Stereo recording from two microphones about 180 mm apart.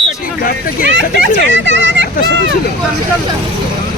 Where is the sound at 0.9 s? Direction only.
75° right (ahead or behind).